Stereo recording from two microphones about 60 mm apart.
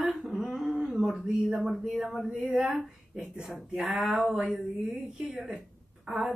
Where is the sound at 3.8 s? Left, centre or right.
Centre.